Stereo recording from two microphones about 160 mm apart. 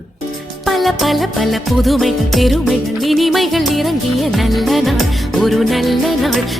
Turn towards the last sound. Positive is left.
turn(degrees=0)  # may be behind; listen again after turning